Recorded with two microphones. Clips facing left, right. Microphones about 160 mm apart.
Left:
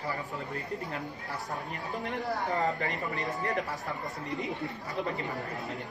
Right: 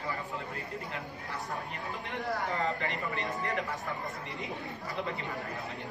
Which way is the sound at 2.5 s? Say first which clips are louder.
Left 3 dB; 40° left (ahead or behind).